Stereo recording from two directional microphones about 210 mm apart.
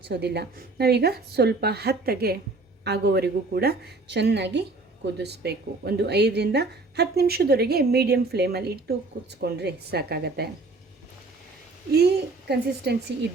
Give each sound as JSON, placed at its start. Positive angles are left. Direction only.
{"t": 0.1, "sound": "a woman's voice", "side_deg": -50}
{"t": 11.9, "sound": "a woman's voice", "side_deg": -50}